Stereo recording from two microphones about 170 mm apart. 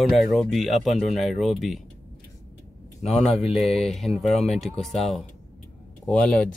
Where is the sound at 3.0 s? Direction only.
Centre (ahead or behind).